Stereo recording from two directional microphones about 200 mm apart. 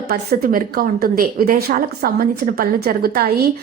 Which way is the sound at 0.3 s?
45° right (ahead or behind).